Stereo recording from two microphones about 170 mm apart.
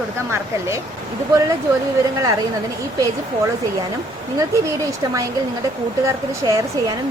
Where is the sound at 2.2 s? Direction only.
20° right (ahead or behind).